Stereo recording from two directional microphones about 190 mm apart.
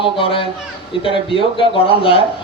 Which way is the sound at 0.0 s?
30° left (ahead or behind).